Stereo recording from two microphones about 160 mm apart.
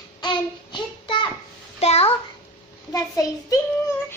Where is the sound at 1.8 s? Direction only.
40° left (ahead or behind).